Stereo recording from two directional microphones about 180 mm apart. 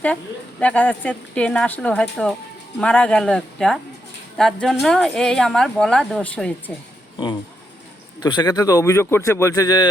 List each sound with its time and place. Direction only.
0.6 s a woman's voice: 10° left (ahead or behind)
8.2 s speech: 20° left (ahead or behind)